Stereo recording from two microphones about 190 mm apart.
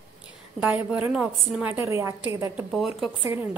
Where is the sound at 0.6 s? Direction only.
10° right (ahead or behind).